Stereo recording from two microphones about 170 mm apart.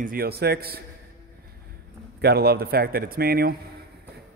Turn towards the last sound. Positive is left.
turn(degrees=-60)  # may be behind; listen again after turning